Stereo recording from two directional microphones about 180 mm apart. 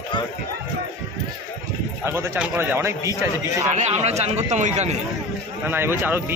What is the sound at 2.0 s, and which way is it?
A man's voice, 10° right (ahead or behind).